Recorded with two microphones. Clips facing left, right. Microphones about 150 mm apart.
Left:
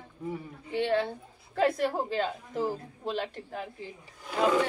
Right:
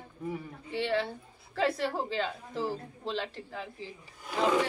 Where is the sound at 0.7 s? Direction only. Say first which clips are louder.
Left 3 dB; 50° left (ahead or behind).